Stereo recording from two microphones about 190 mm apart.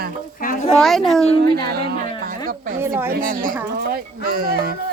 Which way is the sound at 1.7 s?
55° right (ahead or behind).